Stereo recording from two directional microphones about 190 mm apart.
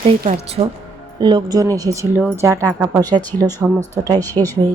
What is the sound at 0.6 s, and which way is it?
A woman's voice, 30° right (ahead or behind).